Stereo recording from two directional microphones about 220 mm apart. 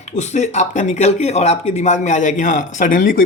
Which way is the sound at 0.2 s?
30° left (ahead or behind).